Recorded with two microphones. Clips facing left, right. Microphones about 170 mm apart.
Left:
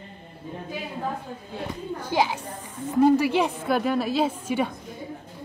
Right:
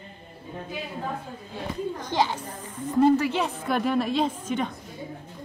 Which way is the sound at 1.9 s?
10° left (ahead or behind).